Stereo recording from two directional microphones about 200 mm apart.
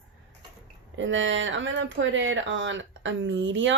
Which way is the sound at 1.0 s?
70° right (ahead or behind).